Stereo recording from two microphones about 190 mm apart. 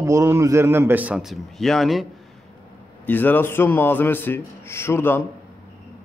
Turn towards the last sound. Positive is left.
turn(degrees=10)  # may be behind; listen again after turning